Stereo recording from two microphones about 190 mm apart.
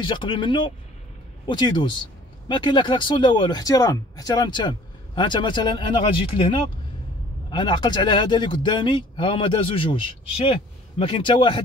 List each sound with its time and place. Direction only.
0.0 s speech: 25° left (ahead or behind)